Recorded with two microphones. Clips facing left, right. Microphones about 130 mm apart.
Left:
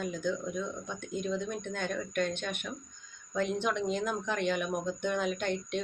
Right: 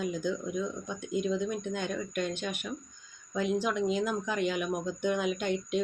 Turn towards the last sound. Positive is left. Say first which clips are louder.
# right 3 dB
turn(degrees=-10)  # may be behind; listen again after turning